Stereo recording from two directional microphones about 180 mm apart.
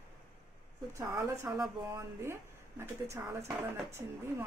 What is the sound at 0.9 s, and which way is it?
Speech, 15° right (ahead or behind).